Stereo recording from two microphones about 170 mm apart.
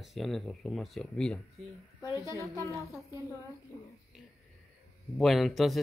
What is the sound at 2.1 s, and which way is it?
Speech, 20° right (ahead or behind).